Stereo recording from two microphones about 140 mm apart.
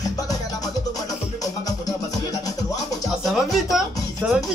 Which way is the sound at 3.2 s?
Centre (ahead or behind).